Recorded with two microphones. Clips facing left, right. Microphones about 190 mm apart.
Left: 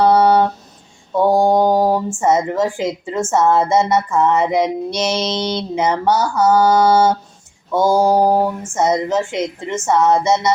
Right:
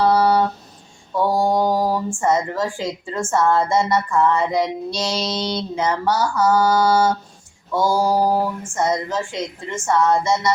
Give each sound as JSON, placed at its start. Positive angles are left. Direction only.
{"t": 0.0, "sound": "a sound", "side_deg": 20}
{"t": 1.1, "sound": "mantra", "side_deg": 25}
{"t": 2.2, "sound": "a woman's voice", "side_deg": 20}